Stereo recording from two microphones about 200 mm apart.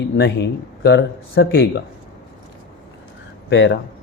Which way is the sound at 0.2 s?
55° left (ahead or behind).